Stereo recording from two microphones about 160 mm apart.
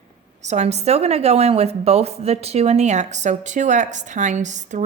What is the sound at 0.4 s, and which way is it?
Speech, 45° right (ahead or behind).